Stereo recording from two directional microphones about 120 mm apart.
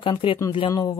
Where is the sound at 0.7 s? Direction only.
30° left (ahead or behind).